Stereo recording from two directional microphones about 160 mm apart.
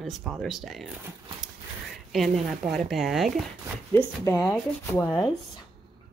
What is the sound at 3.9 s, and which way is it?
Speech, 15° left (ahead or behind).